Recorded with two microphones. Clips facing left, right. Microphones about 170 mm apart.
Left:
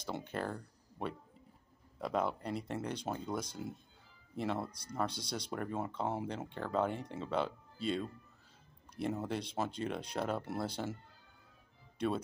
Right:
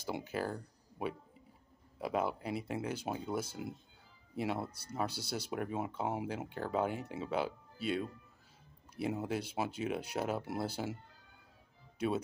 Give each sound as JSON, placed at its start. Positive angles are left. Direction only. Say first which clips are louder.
{"t": 0.0, "sound": "speech", "louder": "right 2 dB", "side_deg": -5}
{"t": 12.0, "sound": "speech", "louder": "even", "side_deg": -5}